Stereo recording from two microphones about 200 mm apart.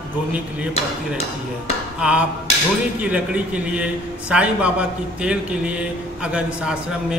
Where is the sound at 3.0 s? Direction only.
5° right (ahead or behind).